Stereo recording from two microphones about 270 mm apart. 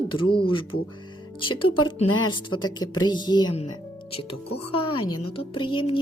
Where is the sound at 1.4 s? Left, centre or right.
Centre.